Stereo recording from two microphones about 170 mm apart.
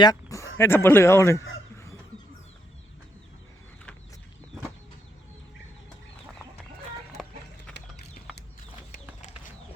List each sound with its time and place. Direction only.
0.0 s speech: 20° left (ahead or behind)
7.2 s run: centre (ahead or behind)